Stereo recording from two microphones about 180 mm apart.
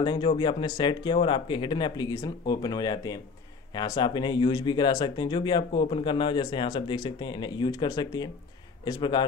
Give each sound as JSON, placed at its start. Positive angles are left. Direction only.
{"t": 0.0, "sound": "speech", "side_deg": 25}